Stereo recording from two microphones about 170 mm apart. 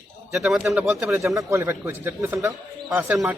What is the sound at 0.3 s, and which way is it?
Speech, centre (ahead or behind).